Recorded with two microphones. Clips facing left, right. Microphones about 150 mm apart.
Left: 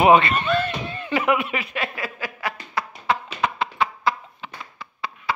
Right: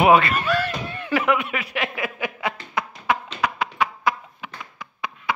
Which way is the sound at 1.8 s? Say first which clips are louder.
Right 2 dB; 15° right (ahead or behind).